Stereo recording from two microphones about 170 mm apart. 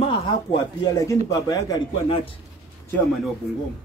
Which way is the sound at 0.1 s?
25° left (ahead or behind).